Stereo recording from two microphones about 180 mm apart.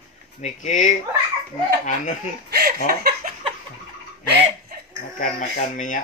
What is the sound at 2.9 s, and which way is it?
Laughter, 60° right (ahead or behind).